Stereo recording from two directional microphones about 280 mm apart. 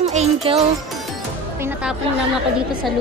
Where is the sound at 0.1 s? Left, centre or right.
Right.